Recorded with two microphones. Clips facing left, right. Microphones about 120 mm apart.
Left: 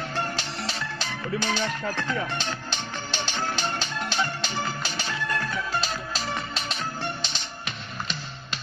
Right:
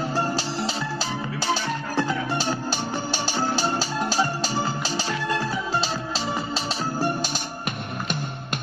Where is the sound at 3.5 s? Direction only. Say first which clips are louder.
Right 5 dB; 35° right (ahead or behind).